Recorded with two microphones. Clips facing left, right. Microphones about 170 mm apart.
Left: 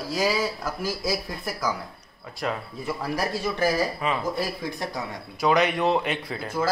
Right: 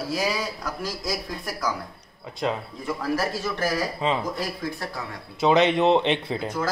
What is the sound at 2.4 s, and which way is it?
Speech, 20° right (ahead or behind).